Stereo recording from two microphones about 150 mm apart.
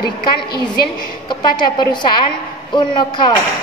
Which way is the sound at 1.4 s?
30° left (ahead or behind).